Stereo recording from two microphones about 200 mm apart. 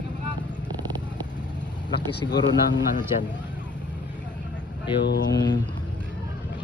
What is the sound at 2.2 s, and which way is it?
Speech, 80° left.